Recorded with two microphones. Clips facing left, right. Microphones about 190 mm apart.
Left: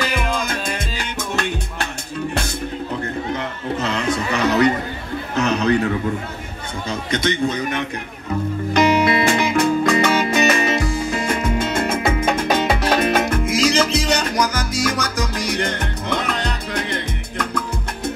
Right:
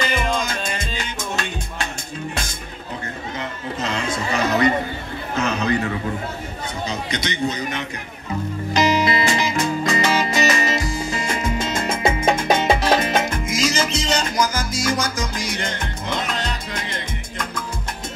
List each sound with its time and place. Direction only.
0.4 s music: 60° left (ahead or behind)
3.3 s chatter: 60° left (ahead or behind)
5.4 s a sound: 65° left (ahead or behind)
6.9 s a man's voice: 55° left (ahead or behind)
8.7 s music: 60° left (ahead or behind)
12.4 s salsa music: 60° left (ahead or behind)
13.9 s music: 60° left (ahead or behind)